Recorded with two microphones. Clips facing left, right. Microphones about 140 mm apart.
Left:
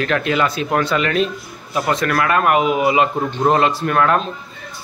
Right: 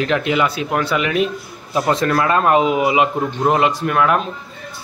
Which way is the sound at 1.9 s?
25° right (ahead or behind).